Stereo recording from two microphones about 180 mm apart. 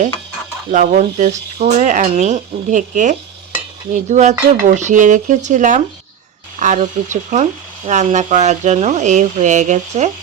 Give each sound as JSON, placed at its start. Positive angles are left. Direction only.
{"t": 0.7, "sound": "speech", "side_deg": -45}